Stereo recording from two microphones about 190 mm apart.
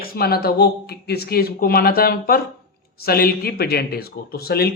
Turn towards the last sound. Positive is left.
turn(degrees=55)  # may be behind; listen again after turning